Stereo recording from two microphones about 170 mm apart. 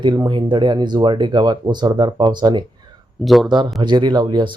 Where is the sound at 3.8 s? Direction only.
25° right (ahead or behind).